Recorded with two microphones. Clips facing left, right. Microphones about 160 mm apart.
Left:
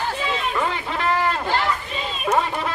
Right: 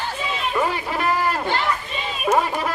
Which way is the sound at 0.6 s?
15° right (ahead or behind).